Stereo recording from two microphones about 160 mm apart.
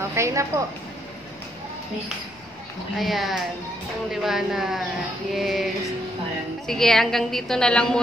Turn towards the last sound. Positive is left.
turn(degrees=5)  # may be behind; listen again after turning